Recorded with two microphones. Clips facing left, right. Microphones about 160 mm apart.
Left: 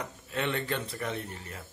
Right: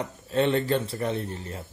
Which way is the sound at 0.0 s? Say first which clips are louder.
Right 9 dB; 30° right (ahead or behind).